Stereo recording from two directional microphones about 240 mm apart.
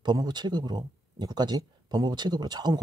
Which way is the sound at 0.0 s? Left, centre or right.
Centre.